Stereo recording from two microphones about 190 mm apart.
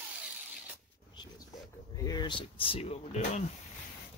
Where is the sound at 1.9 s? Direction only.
20° left (ahead or behind).